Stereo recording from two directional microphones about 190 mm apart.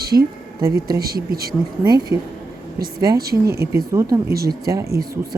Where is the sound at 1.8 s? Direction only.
20° right (ahead or behind).